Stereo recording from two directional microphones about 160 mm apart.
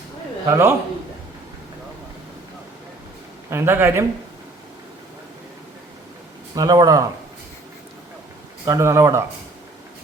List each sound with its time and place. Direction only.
0.4 s speech: 20° right (ahead or behind)
3.5 s speech: 15° right (ahead or behind)
6.6 s speech: 20° right (ahead or behind)
8.6 s speech: 20° right (ahead or behind)